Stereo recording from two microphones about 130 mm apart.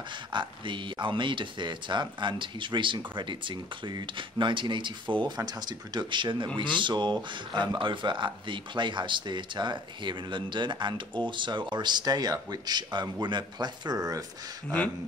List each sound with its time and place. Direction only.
0.3 s speech: 40° right (ahead or behind)